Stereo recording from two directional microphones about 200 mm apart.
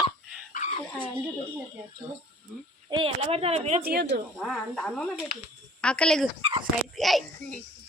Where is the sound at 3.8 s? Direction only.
50° right (ahead or behind).